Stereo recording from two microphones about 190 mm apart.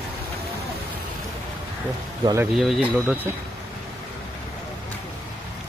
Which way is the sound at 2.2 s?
20° right (ahead or behind).